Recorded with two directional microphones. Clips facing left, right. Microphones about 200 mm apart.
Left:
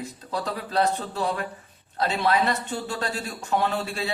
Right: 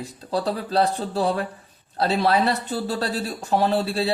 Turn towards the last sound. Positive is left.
turn(degrees=-35)  # may be behind; listen again after turning